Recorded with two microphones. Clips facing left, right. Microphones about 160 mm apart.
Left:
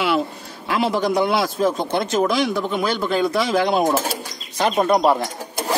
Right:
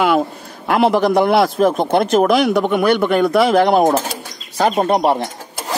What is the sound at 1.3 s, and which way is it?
Speech, 60° right (ahead or behind).